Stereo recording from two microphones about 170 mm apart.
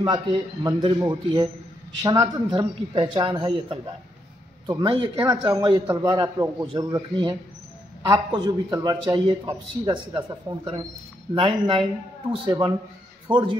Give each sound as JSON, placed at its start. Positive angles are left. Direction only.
{"t": 0.7, "sound": "a man's voice", "side_deg": -25}